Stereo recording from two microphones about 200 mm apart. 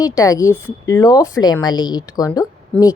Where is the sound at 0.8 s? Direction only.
20° left (ahead or behind).